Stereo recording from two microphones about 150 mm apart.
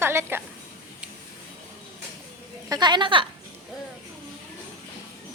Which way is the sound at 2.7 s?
30° right (ahead or behind).